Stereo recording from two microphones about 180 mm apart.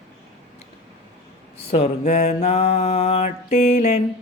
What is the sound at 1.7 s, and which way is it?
Music, 35° left (ahead or behind).